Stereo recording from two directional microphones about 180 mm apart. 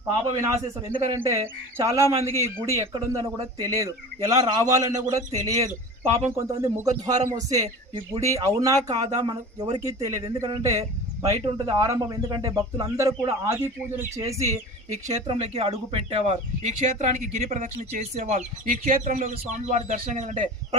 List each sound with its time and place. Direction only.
0.4 s speech: 15° right (ahead or behind)
15.0 s speech: 40° right (ahead or behind)